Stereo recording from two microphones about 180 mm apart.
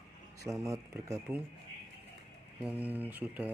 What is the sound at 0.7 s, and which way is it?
Speech, 15° right (ahead or behind).